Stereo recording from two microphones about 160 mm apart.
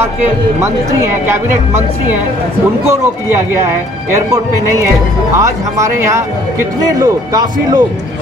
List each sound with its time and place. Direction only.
2.9 s speech: 15° right (ahead or behind)
5.4 s speech: 20° right (ahead or behind)